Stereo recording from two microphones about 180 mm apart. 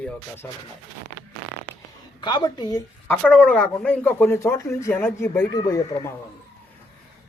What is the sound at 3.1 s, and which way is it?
Speech, 5° left (ahead or behind).